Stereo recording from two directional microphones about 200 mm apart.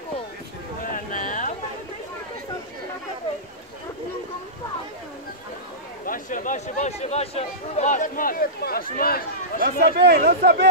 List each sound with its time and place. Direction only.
0.8 s a sound: 40° left (ahead or behind)
6.0 s speech: 45° left (ahead or behind)
9.6 s speech: 55° right (ahead or behind)